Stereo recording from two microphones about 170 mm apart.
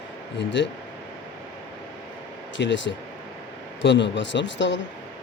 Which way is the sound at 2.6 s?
90° left.